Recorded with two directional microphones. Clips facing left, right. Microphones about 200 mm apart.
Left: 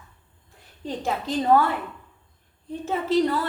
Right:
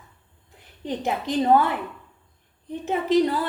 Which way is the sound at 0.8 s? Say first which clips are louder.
Right 1 dB; 20° right (ahead or behind).